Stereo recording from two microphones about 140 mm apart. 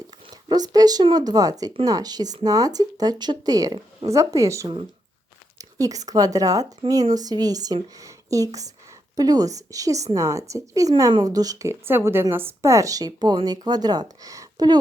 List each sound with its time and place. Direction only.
0.4 s a woman's voice: 30° right (ahead or behind)